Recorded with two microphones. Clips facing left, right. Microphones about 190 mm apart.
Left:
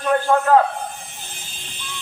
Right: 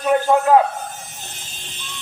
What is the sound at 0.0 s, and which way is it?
Speech, 20° right (ahead or behind).